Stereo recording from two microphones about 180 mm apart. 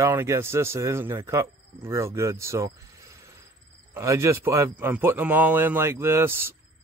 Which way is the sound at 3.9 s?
15° right (ahead or behind).